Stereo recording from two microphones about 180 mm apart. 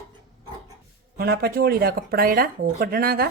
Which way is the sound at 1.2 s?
60° right (ahead or behind).